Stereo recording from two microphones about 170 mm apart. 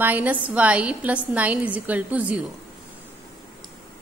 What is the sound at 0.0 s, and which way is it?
A woman's voice, 10° right (ahead or behind).